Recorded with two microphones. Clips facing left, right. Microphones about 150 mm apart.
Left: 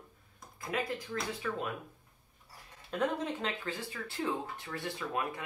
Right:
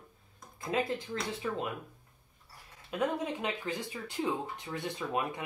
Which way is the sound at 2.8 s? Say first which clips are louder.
Right 1 dB; 10° right (ahead or behind).